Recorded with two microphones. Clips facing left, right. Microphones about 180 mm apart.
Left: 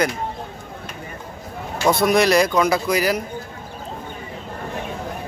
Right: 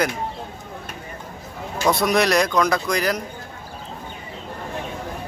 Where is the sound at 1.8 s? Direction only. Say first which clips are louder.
Left 2 dB; centre (ahead or behind).